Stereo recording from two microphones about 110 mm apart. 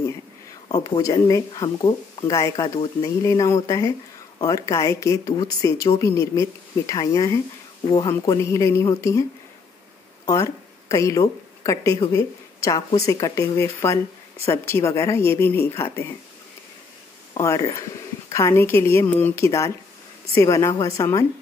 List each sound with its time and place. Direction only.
0.7 s speech: 35° left (ahead or behind)
2.3 s speech: 30° left (ahead or behind)
7.8 s speech: 45° left (ahead or behind)
8.1 s speech: 25° left (ahead or behind)
10.2 s a woman's voice: 30° left (ahead or behind)
17.4 s speech: 30° left (ahead or behind)